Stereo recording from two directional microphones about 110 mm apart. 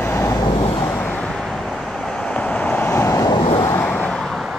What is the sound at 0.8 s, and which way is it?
Vehicle, 15° left (ahead or behind).